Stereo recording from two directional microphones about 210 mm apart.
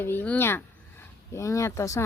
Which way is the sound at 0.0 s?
10° left (ahead or behind).